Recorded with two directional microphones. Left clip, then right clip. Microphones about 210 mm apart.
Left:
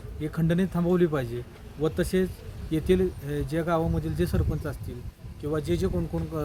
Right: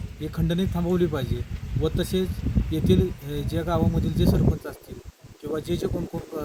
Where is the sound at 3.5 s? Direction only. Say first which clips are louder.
Right 1 dB; 5° left (ahead or behind).